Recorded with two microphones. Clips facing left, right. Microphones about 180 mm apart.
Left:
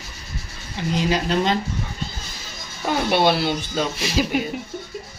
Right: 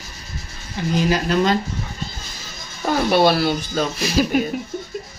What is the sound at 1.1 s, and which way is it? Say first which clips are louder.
Speech: right 2 dB; 20° left (ahead or behind).